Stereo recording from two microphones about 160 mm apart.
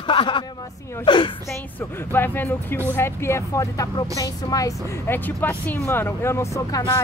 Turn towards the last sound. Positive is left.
turn(degrees=20)  # may be behind; listen again after turning